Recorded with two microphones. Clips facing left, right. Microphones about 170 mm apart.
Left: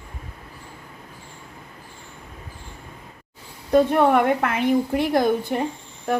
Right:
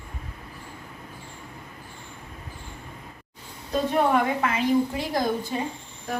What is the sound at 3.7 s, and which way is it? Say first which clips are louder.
A woman's voice: left 6 dB; 60° left (ahead or behind).